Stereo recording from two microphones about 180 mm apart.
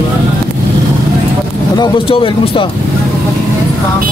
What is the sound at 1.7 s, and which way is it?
Speech, 25° left (ahead or behind).